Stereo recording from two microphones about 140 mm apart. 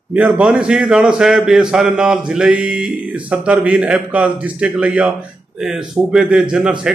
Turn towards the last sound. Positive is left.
turn(degrees=-5)  # may be behind; listen again after turning